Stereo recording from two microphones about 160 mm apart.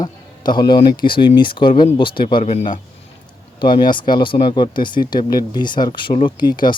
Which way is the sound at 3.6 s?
30° left (ahead or behind).